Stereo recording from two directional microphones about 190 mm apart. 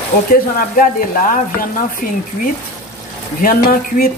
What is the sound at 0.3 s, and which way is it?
Speech, 45° left (ahead or behind).